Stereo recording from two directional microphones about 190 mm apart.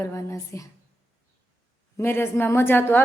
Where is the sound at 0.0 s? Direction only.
15° left (ahead or behind).